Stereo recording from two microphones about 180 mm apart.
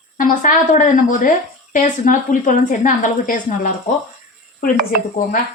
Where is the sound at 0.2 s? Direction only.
45° left (ahead or behind).